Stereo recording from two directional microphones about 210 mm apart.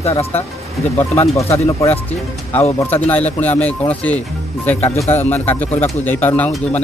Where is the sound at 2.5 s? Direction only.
10° left (ahead or behind).